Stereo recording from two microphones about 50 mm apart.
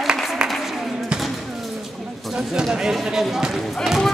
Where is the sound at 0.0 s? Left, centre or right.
Centre.